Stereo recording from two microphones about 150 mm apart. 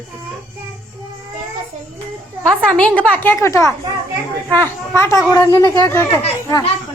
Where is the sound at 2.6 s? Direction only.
10° left (ahead or behind).